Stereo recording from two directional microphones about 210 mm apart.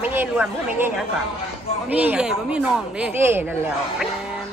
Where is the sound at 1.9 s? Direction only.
5° right (ahead or behind).